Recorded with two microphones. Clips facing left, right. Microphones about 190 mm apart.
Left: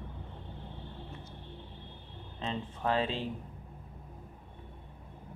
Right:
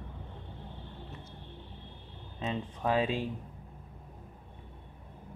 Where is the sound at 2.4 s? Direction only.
10° right (ahead or behind).